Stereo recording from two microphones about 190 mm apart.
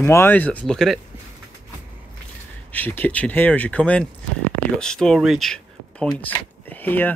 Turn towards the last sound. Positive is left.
turn(degrees=10)  # may be behind; listen again after turning